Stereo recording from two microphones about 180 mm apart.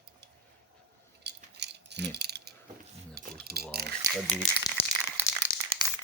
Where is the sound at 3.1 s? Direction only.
60° right (ahead or behind).